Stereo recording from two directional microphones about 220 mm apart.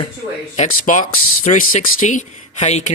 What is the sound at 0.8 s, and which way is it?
Speech, 35° left (ahead or behind).